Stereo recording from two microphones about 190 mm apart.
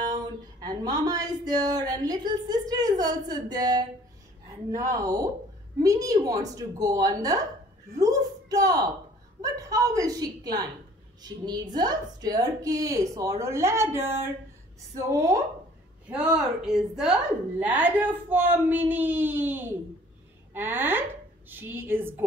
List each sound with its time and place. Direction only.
0.1 s a woman's voice: 20° right (ahead or behind)
8.0 s a sound: 20° right (ahead or behind)
9.4 s a woman's voice: 20° right (ahead or behind)
16.1 s a woman's voice: 5° right (ahead or behind)